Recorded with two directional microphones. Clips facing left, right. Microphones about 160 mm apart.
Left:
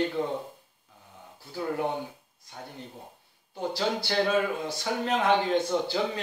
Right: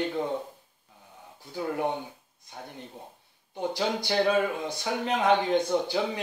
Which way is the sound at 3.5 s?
15° right (ahead or behind).